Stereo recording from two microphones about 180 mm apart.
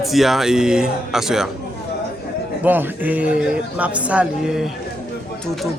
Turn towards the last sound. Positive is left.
turn(degrees=-5)  # may be behind; listen again after turning